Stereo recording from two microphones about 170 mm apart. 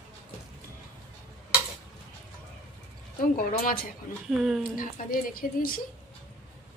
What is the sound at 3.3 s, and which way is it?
Speech, 55° left (ahead or behind).